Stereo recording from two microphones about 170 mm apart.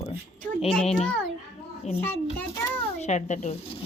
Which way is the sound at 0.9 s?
5° left (ahead or behind).